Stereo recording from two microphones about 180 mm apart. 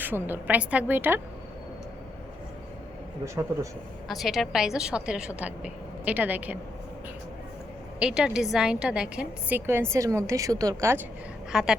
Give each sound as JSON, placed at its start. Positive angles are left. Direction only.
{"t": 0.0, "sound": "a woman's voice", "side_deg": -10}
{"t": 4.1, "sound": "a woman's voice", "side_deg": 0}
{"t": 7.9, "sound": "a woman's voice", "side_deg": -5}
{"t": 11.5, "sound": "a woman's voice", "side_deg": -5}